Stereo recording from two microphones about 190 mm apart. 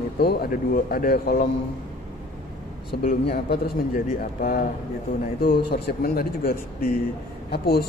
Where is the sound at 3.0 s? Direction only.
55° left (ahead or behind).